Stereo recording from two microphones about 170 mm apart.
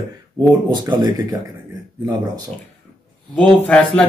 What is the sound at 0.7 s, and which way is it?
Speech, 25° right (ahead or behind).